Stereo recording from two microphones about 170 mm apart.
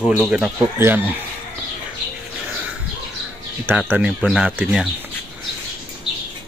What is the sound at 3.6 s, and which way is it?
Speech, 10° right (ahead or behind).